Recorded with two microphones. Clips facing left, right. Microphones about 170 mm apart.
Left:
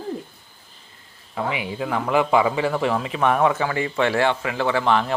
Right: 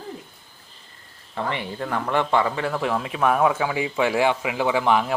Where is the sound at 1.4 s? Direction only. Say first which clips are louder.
Left 2 dB; 5° left (ahead or behind).